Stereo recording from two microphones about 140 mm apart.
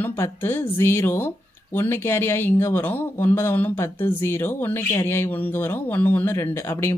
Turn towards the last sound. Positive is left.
turn(degrees=15)  # may be behind; listen again after turning